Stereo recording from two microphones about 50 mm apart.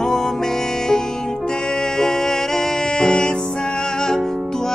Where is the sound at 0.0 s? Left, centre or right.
Centre.